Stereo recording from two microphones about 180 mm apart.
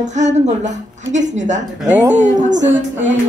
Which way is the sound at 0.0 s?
40° right (ahead or behind).